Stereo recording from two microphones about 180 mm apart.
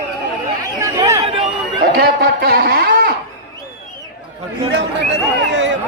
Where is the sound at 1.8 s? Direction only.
55° right (ahead or behind).